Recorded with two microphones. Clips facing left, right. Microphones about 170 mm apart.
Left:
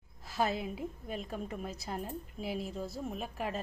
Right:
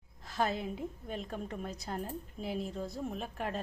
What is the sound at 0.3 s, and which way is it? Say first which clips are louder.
A woman's voice: even; 5° left (ahead or behind).